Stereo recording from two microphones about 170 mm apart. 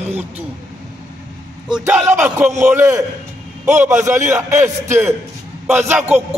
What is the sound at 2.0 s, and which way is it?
Speech, 15° right (ahead or behind).